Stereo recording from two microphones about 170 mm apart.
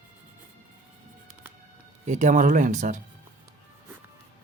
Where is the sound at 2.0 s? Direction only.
50° right (ahead or behind).